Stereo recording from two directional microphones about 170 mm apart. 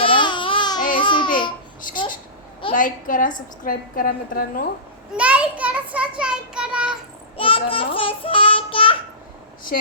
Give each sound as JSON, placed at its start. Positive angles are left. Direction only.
{"t": 0.0, "sound": "baby cry", "side_deg": 30}
{"t": 0.9, "sound": "babbling", "side_deg": 30}
{"t": 2.7, "sound": "a woman's voice", "side_deg": 50}
{"t": 5.1, "sound": "a child's voice", "side_deg": -5}
{"t": 7.3, "sound": "a child's voice", "side_deg": 30}
{"t": 7.9, "sound": "child singing", "side_deg": 30}